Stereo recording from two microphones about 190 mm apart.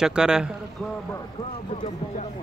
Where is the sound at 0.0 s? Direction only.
5° right (ahead or behind).